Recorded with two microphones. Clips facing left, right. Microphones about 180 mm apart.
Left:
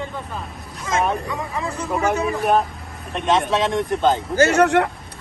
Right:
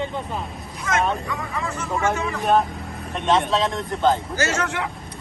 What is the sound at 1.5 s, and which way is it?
Speech, 35° left (ahead or behind).